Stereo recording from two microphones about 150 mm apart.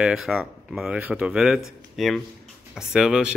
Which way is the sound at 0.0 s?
Centre (ahead or behind).